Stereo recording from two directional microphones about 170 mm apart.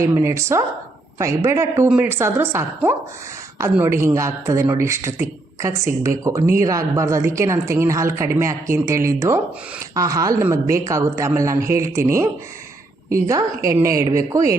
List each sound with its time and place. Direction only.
0.0 s a woman's voice: 15° right (ahead or behind)